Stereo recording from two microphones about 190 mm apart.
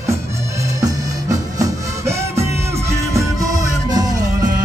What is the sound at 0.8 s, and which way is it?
Music, 15° right (ahead or behind).